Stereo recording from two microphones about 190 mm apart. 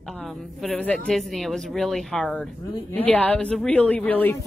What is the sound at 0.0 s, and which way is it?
A woman's voice, centre (ahead or behind).